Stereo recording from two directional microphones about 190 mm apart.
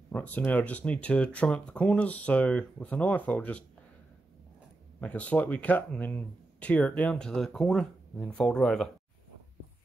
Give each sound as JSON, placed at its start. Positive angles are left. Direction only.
{"t": 0.1, "sound": "speech", "side_deg": 10}
{"t": 5.0, "sound": "speech", "side_deg": 10}